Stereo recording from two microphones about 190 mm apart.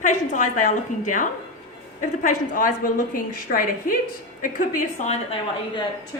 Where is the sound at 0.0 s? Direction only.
40° left (ahead or behind).